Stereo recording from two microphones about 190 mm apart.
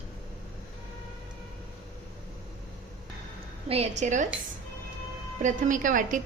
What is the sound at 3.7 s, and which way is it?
Speech, 35° right (ahead or behind).